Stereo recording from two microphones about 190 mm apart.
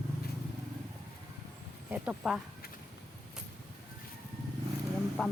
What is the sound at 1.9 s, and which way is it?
Speech, 5° right (ahead or behind).